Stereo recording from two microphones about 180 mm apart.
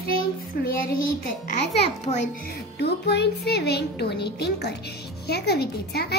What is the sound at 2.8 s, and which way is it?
A woman's voice, 65° left (ahead or behind).